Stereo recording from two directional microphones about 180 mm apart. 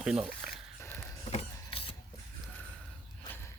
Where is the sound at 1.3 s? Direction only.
35° left (ahead or behind).